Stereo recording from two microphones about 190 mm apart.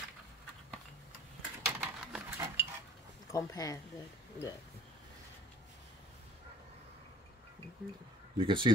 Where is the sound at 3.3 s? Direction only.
15° left (ahead or behind).